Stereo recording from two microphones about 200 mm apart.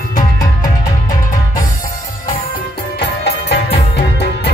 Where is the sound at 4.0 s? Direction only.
55° left (ahead or behind).